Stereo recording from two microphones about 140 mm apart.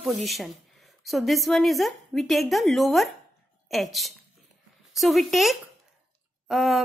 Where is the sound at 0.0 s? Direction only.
Centre (ahead or behind).